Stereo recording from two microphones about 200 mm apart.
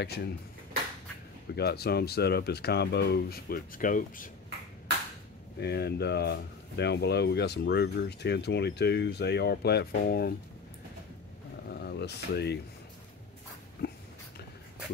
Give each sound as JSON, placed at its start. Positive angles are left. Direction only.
{"t": 0.0, "sound": "speech", "side_deg": 55}
{"t": 1.5, "sound": "speech", "side_deg": 55}
{"t": 5.6, "sound": "speech", "side_deg": 55}
{"t": 11.7, "sound": "a sound", "side_deg": 55}
{"t": 13.8, "sound": "dog", "side_deg": 55}